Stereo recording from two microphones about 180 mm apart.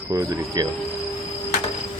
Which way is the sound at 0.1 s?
20° right (ahead or behind).